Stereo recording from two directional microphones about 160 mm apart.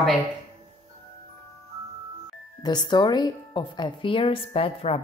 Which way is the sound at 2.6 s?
25° left (ahead or behind).